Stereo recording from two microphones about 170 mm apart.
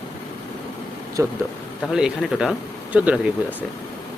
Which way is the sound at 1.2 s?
15° right (ahead or behind).